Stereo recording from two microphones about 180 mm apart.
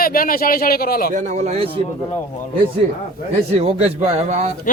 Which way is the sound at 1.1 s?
45° right (ahead or behind).